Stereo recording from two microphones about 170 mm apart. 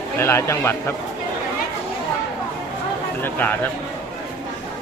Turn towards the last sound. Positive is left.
turn(degrees=10)  # may be behind; listen again after turning